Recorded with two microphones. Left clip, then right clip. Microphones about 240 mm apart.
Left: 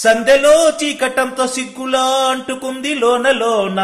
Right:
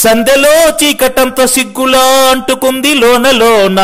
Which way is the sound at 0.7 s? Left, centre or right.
Right.